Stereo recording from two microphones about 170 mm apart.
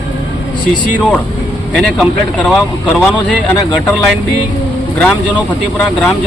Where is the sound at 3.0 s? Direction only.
5° left (ahead or behind).